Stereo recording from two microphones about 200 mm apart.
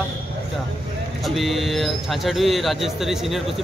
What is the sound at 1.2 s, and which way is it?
Speech, centre (ahead or behind).